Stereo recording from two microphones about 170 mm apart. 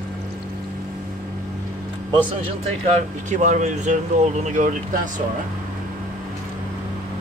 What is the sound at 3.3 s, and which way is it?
Speech, 45° right (ahead or behind).